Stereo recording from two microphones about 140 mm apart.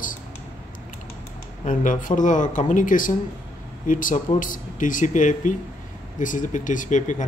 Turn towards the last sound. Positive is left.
turn(degrees=65)  # may be behind; listen again after turning